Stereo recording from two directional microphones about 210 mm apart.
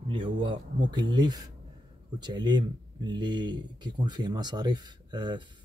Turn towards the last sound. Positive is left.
turn(degrees=-20)  # may be behind; listen again after turning